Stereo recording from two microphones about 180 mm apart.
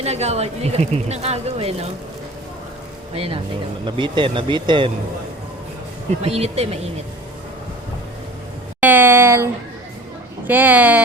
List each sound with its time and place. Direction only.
0.0 s speech: 35° right (ahead or behind)
3.2 s speech: 30° right (ahead or behind)
6.1 s speech: 35° right (ahead or behind)
8.8 s speech: 10° right (ahead or behind)